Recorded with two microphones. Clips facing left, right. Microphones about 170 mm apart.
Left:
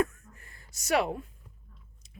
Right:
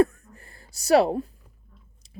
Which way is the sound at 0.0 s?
35° right (ahead or behind).